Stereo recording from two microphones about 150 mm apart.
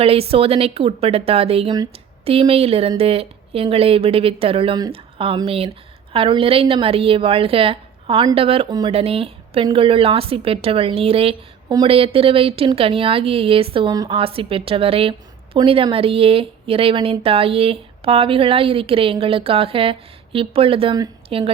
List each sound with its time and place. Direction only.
0.0 s a woman's voice: 40° right (ahead or behind)
14.1 s a woman's voice: 40° right (ahead or behind)